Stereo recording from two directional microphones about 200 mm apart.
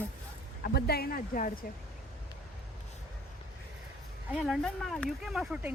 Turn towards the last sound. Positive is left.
turn(degrees=-5)  # may be behind; listen again after turning